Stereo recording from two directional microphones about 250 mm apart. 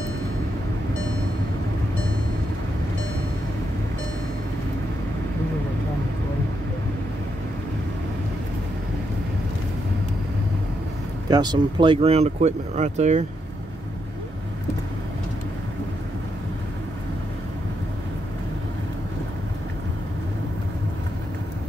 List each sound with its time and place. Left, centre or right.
11.2 s speech: centre